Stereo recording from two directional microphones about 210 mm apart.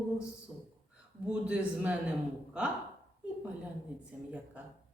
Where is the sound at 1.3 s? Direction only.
5° right (ahead or behind).